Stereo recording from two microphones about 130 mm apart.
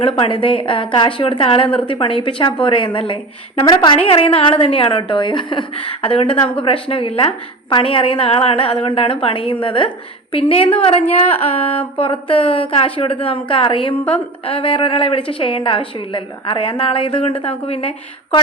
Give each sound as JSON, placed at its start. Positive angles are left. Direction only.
{"t": 0.0, "sound": "a woman's voice", "side_deg": 45}